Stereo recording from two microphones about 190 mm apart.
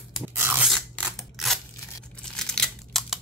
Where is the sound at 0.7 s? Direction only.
Centre (ahead or behind).